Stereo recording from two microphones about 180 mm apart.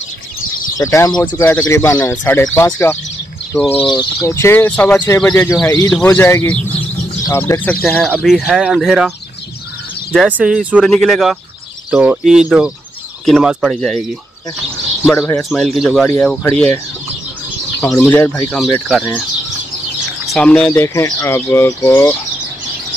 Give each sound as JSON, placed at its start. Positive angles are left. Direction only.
{"t": 0.7, "sound": "speech", "side_deg": 20}
{"t": 3.9, "sound": "speech", "side_deg": 20}
{"t": 10.1, "sound": "speech", "side_deg": -5}
{"t": 15.5, "sound": "speech", "side_deg": 0}
{"t": 16.4, "sound": "speech", "side_deg": 10}
{"t": 20.2, "sound": "speech", "side_deg": 5}
{"t": 20.7, "sound": "speech", "side_deg": 15}